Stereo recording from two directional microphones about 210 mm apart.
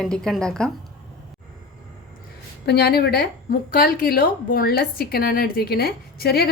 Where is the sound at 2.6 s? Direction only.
50° left (ahead or behind).